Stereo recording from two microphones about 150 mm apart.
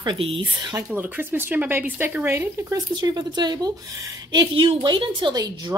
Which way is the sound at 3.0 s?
30° right (ahead or behind).